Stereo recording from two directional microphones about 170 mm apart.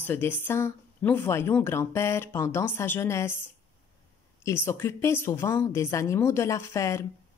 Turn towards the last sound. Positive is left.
turn(degrees=15)  # may be behind; listen again after turning